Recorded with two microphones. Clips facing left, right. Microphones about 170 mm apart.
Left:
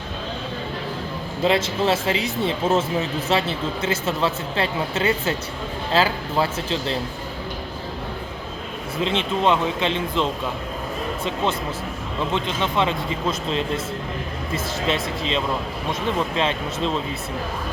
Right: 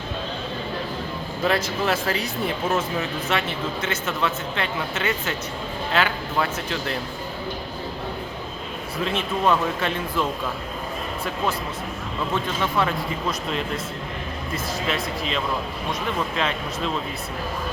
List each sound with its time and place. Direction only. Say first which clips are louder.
1.5 s speech: left 3 dB; 25° left (ahead or behind)
9.0 s speech: left 1 dB; 25° left (ahead or behind)
12.3 s speech: even; 20° left (ahead or behind)